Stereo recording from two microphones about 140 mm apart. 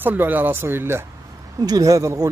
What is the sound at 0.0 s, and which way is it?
Speech, 15° right (ahead or behind).